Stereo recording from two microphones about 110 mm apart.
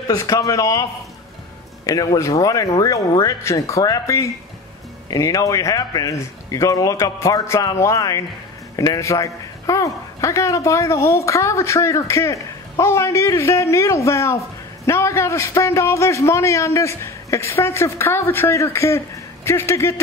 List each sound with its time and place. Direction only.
0.0 s a woman's voice: 30° left (ahead or behind)
1.9 s a woman's voice: 35° left (ahead or behind)